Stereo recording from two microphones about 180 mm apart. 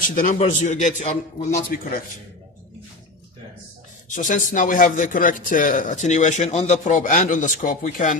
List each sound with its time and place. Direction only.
0.0 s speech: 50° left (ahead or behind)
4.1 s speech: 45° left (ahead or behind)